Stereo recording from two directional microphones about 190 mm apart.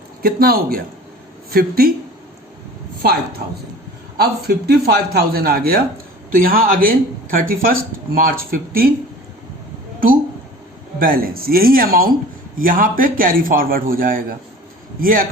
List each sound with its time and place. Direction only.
0.2 s speech: 50° right (ahead or behind)
3.0 s a woman's voice: 55° right (ahead or behind)
11.0 s speech: 50° right (ahead or behind)